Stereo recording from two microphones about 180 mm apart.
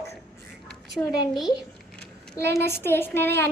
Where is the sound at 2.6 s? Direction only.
15° left (ahead or behind).